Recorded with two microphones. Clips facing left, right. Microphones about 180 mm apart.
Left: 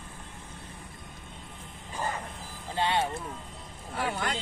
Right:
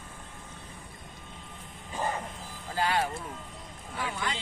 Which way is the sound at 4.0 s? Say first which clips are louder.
Left 3 dB; 45° left (ahead or behind).